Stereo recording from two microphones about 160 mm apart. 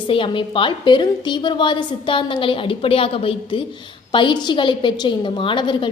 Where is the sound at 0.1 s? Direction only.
30° left (ahead or behind).